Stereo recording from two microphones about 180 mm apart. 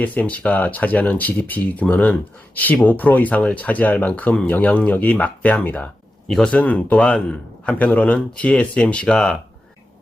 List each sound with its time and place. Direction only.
0.0 s speech: 10° left (ahead or behind)